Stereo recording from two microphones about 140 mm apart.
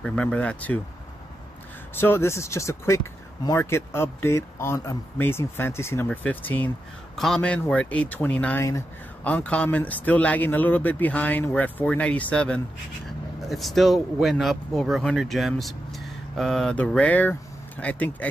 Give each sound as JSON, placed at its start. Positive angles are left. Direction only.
{"t": 0.0, "sound": "speech", "side_deg": 5}
{"t": 2.0, "sound": "speech", "side_deg": 15}